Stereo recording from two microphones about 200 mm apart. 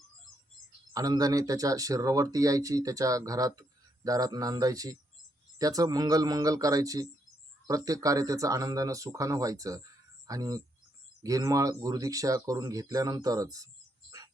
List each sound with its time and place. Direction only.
0.9 s speech: 20° right (ahead or behind)